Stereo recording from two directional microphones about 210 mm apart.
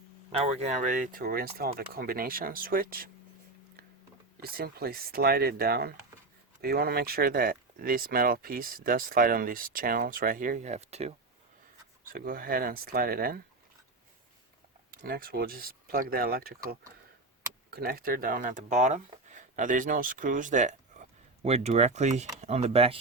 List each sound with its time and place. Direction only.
0.3 s speech: 30° right (ahead or behind)
4.4 s speech: 45° right (ahead or behind); by 11.1 s 30° right (ahead or behind)
12.1 s speech: 45° right (ahead or behind)
14.8 s speech: 45° right (ahead or behind)
17.7 s speech: 50° right (ahead or behind); by 23.0 s 30° right (ahead or behind)